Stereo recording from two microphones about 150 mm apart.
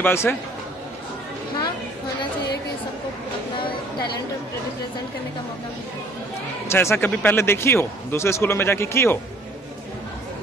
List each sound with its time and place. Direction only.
0.0 s speech: 15° left (ahead or behind)
6.7 s speech: 15° left (ahead or behind)